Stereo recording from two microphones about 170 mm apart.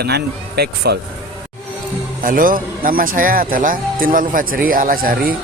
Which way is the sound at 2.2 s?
55° right (ahead or behind).